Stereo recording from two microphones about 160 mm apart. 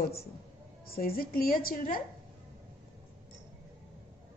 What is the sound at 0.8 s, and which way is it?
A woman's voice, 65° left (ahead or behind).